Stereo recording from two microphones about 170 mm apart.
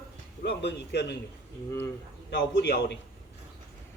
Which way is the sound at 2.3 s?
90° left.